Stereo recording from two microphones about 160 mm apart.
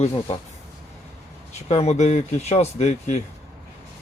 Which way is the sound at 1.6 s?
45° left (ahead or behind).